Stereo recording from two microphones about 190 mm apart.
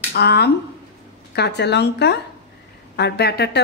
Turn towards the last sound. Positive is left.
turn(degrees=60)  # may be behind; listen again after turning